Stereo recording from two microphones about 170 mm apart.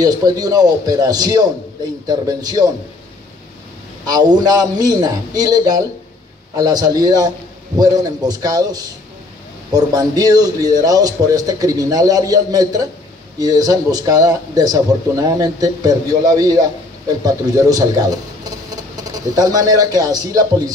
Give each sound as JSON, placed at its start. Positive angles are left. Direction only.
{"t": 0.0, "sound": "speech", "side_deg": -20}
{"t": 4.0, "sound": "speech", "side_deg": -25}